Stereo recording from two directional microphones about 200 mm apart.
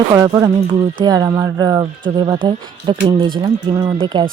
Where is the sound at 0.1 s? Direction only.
20° right (ahead or behind).